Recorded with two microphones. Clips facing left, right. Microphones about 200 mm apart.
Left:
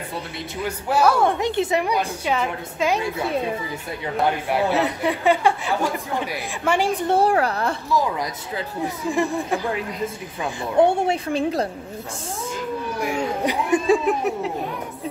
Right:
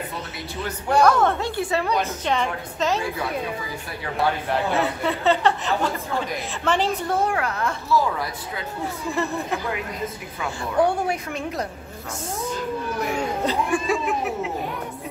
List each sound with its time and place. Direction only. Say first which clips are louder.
0.6 s speech: right 1 dB; 5° left (ahead or behind)
4.5 s speech: left 2 dB; 15° left (ahead or behind)
7.1 s a woman's voice: left 5 dB; 35° left (ahead or behind)
7.9 s speech: right 2 dB; 15° left (ahead or behind)
10.0 s a woman's voice: left 2 dB; 25° left (ahead or behind)
13.0 s speech: left 2 dB; 15° left (ahead or behind)